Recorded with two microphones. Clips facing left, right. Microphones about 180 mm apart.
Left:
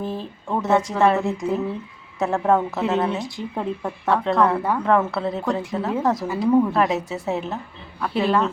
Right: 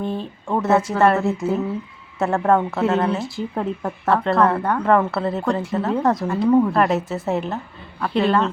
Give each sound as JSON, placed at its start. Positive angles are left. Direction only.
{"t": 0.0, "sound": "a woman's voice", "side_deg": 0}